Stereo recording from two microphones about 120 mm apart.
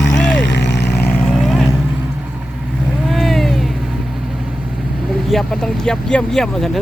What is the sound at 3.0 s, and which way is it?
Vehicle, centre (ahead or behind).